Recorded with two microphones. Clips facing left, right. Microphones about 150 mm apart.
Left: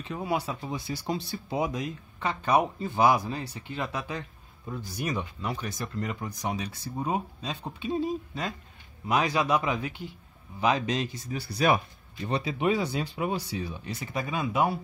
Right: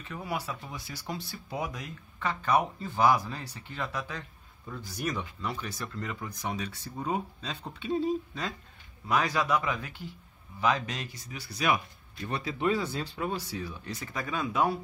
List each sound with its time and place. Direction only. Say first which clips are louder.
0.0 s speech: left 5 dB; 25° left (ahead or behind)
11.3 s speech: left 4 dB; 35° left (ahead or behind)
12.3 s speech: left 3 dB; 20° left (ahead or behind)